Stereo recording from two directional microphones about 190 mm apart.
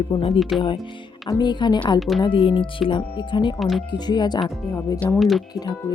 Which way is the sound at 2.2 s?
25° left (ahead or behind).